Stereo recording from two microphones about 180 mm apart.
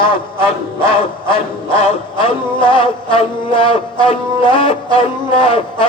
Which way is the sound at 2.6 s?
25° left (ahead or behind).